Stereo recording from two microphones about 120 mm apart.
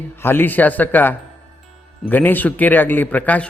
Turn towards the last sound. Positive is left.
turn(degrees=15)  # may be behind; listen again after turning